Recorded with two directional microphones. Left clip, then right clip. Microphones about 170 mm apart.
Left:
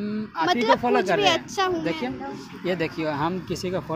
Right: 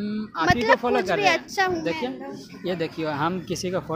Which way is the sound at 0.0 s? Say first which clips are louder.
Even; 10° right (ahead or behind).